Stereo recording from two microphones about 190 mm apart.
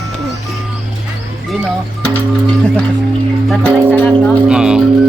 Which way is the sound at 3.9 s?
5° left (ahead or behind).